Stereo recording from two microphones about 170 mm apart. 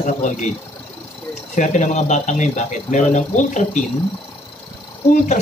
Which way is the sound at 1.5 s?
45° left (ahead or behind).